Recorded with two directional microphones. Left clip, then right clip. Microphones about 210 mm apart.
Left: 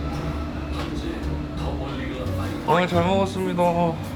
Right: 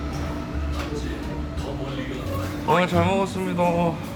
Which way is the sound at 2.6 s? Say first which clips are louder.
Even; centre (ahead or behind).